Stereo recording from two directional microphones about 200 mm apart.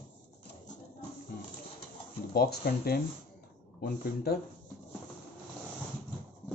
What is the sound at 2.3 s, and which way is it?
Speech, 50° left (ahead or behind).